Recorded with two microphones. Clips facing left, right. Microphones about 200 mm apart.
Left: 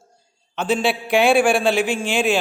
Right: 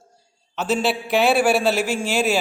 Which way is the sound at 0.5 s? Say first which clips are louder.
Left 1 dB; 5° right (ahead or behind).